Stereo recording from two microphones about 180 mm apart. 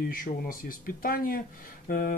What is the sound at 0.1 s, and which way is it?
Speech, 50° left (ahead or behind).